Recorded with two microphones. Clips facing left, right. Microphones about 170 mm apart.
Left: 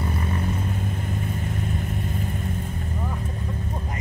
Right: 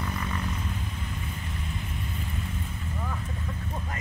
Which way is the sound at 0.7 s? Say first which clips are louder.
Left 7 dB; 50° left (ahead or behind).